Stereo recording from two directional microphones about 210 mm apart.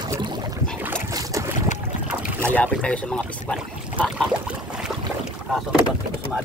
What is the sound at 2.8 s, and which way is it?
Pour, 5° left (ahead or behind).